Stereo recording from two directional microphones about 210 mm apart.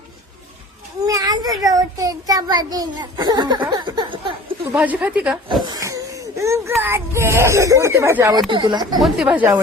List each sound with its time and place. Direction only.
1.0 s child singing: 15° right (ahead or behind)
4.7 s a woman's voice: 5° right (ahead or behind)
9.0 s speech: centre (ahead or behind)